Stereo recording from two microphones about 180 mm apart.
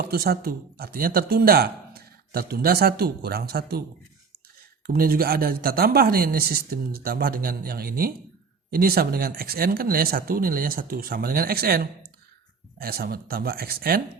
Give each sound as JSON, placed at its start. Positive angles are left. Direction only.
{"t": 0.0, "sound": "speech", "side_deg": -60}
{"t": 4.9, "sound": "speech", "side_deg": -55}